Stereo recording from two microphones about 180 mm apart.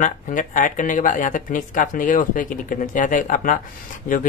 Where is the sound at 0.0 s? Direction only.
45° left (ahead or behind).